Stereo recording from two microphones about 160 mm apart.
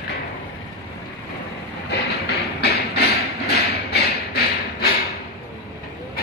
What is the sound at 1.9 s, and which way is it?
Music, 85° left.